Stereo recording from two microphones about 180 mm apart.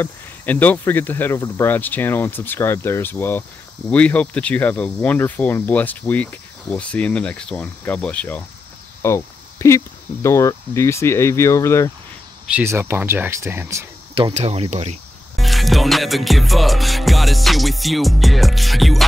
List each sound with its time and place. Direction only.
0.0 s speech: 10° left (ahead or behind)
12.5 s speech: 15° right (ahead or behind)
14.3 s speech: 35° right (ahead or behind)
15.3 s music: centre (ahead or behind)